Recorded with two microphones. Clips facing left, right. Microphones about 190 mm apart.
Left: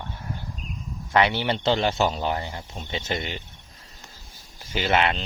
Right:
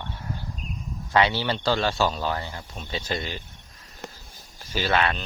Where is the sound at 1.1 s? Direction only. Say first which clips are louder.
Left 1 dB; 20° left (ahead or behind).